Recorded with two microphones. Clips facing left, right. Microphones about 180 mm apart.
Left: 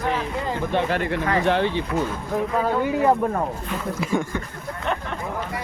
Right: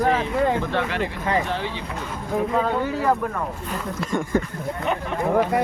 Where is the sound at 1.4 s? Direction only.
65° left (ahead or behind).